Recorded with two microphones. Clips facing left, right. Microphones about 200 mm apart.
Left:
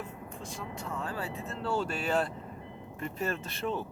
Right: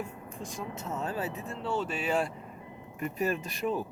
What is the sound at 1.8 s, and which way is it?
Speech, 10° right (ahead or behind).